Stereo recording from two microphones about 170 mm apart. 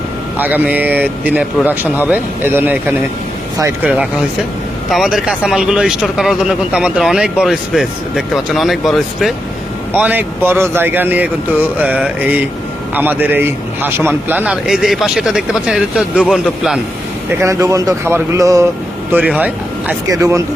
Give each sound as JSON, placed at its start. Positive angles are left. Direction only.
{"t": 0.3, "sound": "speech", "side_deg": -10}
{"t": 17.4, "sound": "speech", "side_deg": -20}
{"t": 19.1, "sound": "speech", "side_deg": -5}
{"t": 20.1, "sound": "speech", "side_deg": -20}